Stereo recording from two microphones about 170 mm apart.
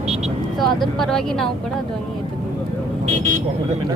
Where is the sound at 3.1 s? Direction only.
45° right (ahead or behind).